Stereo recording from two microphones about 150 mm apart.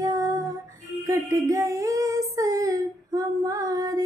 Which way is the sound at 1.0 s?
20° right (ahead or behind).